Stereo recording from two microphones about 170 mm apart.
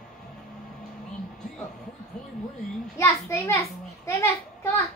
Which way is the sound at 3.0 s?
15° left (ahead or behind).